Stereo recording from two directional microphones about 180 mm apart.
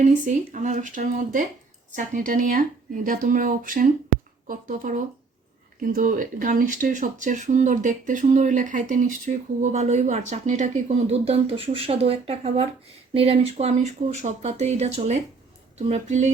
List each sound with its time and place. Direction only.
0.0 s speech: 45° right (ahead or behind)